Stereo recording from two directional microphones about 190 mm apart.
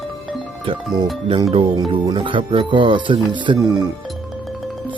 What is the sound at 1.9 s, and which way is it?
Speech, 25° right (ahead or behind).